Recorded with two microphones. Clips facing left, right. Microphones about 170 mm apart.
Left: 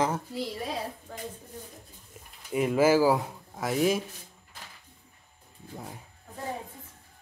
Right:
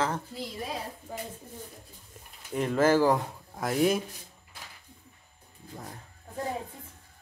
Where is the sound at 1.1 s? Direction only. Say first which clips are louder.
Right 3 dB; 10° right (ahead or behind).